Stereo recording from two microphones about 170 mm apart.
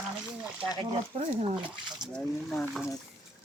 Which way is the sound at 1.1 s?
35° right (ahead or behind).